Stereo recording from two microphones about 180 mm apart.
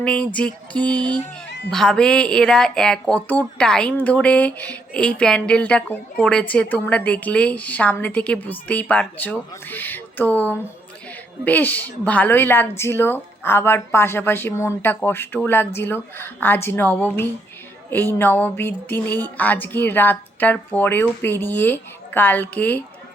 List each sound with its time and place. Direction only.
0.0 s speech: 5° left (ahead or behind)